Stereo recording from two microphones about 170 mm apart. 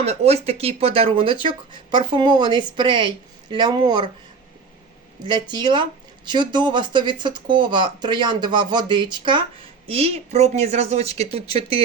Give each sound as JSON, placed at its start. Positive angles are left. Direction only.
{"t": 0.0, "sound": "speech", "side_deg": -35}
{"t": 5.2, "sound": "speech", "side_deg": -25}